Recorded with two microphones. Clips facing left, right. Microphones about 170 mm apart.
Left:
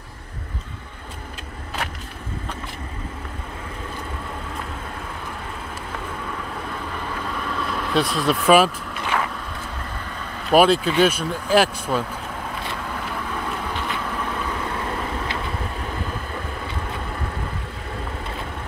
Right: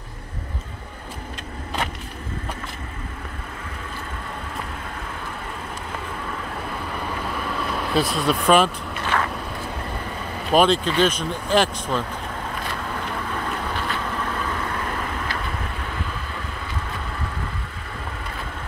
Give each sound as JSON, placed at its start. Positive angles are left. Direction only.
{"t": 7.9, "sound": "speech", "side_deg": 0}
{"t": 10.5, "sound": "speech", "side_deg": 5}
{"t": 12.9, "sound": "vehicle", "side_deg": 0}
{"t": 13.7, "sound": "vehicle", "side_deg": 15}